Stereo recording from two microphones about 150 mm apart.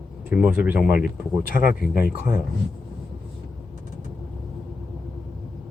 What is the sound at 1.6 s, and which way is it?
Speech, 80° left.